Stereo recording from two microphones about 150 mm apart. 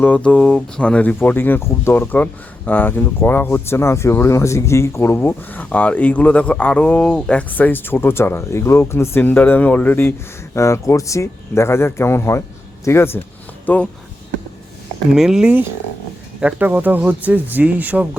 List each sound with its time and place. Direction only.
0.0 s speech: 10° left (ahead or behind)
15.1 s speech: 5° right (ahead or behind)